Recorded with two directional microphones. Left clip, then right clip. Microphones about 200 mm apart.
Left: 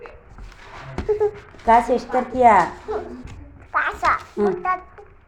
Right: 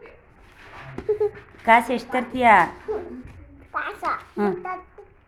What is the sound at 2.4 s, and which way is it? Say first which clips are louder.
Speech: left 2 dB; 35° right (ahead or behind).